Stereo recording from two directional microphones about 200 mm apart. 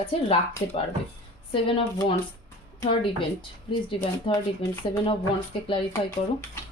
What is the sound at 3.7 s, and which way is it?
Speech, 25° left (ahead or behind).